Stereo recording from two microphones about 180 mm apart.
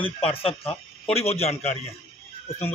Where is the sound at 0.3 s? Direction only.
30° left (ahead or behind).